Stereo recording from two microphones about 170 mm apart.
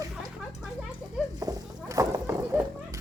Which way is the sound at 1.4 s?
20° right (ahead or behind).